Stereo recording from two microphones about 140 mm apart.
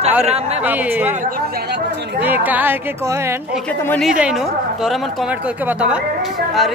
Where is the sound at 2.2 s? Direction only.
15° right (ahead or behind).